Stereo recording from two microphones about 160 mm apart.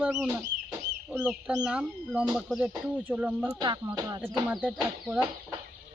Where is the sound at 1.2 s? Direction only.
5° right (ahead or behind).